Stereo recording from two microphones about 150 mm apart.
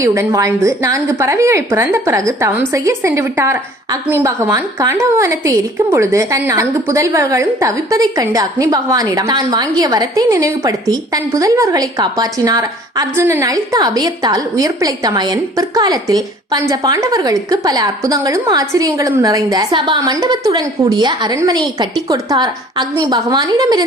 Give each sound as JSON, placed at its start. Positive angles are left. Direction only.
{"t": 0.0, "sound": "a woman's voice", "side_deg": -20}